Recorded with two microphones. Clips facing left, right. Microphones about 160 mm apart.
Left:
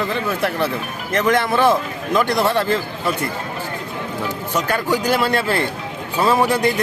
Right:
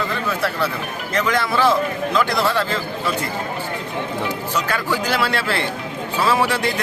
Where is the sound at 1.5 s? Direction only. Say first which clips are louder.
Left 1 dB; 20° left (ahead or behind).